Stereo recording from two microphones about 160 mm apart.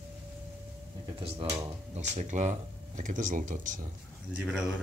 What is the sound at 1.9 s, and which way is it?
Speech, 45° right (ahead or behind).